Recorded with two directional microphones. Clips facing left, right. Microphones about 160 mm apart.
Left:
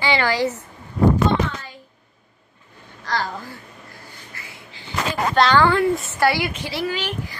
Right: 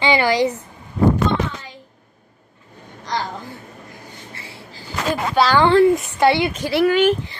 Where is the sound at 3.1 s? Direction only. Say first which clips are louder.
Even; 20° right (ahead or behind).